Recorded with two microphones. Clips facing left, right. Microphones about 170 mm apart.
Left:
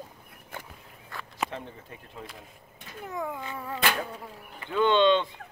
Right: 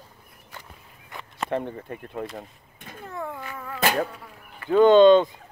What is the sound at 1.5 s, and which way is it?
Speech, 60° right (ahead or behind).